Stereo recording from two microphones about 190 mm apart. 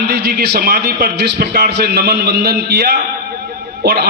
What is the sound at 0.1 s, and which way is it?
A man's voice, 60° right (ahead or behind).